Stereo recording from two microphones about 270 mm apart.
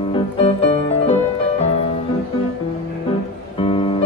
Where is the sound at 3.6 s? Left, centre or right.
Centre.